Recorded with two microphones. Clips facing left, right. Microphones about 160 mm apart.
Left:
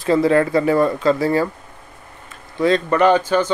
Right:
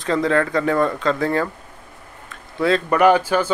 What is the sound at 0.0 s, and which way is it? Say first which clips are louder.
Speech: left 4 dB; 10° left (ahead or behind).